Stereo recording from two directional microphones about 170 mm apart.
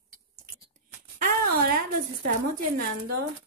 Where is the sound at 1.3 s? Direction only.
60° right (ahead or behind).